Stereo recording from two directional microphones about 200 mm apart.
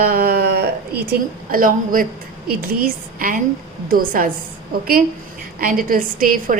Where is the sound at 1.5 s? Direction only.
45° right (ahead or behind).